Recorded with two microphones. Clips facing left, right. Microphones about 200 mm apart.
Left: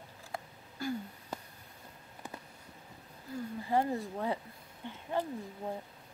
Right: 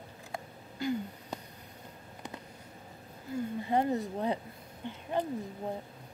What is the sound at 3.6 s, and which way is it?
Speech, 20° right (ahead or behind).